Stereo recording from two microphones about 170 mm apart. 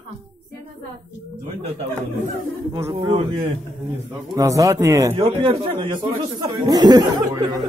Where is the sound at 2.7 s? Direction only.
30° right (ahead or behind).